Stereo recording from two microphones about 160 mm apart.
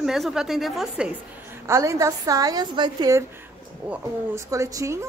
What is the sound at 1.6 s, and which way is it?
A woman's voice, 20° right (ahead or behind).